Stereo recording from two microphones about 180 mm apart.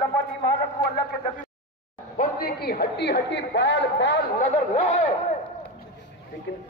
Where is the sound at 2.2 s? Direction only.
55° left (ahead or behind); by 4.1 s 80° left.